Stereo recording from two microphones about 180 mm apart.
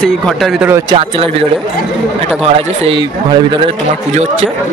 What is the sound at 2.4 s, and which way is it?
Speech, 30° right (ahead or behind).